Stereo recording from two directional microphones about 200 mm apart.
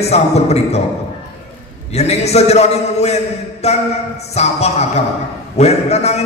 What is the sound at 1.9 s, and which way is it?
A man's voice, 35° left (ahead or behind).